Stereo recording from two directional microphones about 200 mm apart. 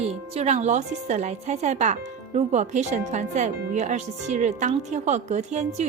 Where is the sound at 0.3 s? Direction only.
35° right (ahead or behind).